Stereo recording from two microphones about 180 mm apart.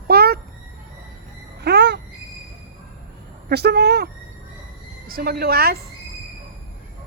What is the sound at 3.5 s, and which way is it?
A woman's voice, 65° right (ahead or behind).